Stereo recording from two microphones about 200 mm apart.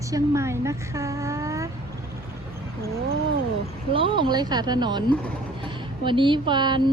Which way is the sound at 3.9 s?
25° right (ahead or behind).